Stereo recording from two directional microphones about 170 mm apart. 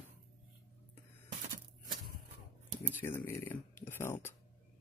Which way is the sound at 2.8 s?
15° left (ahead or behind).